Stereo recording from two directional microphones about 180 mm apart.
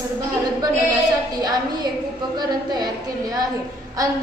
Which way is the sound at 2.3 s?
25° right (ahead or behind).